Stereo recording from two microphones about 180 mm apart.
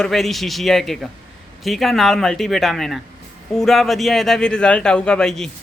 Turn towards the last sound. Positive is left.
turn(degrees=5)  # may be behind; listen again after turning